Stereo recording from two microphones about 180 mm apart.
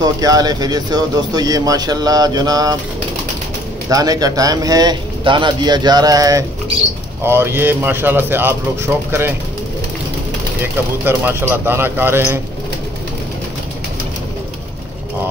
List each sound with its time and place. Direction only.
0.0 s speech: 20° right (ahead or behind)
3.9 s a man's voice: 20° right (ahead or behind)
10.6 s a man's voice: 10° right (ahead or behind)